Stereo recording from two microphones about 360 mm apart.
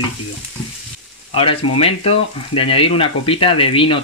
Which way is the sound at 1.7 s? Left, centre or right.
Centre.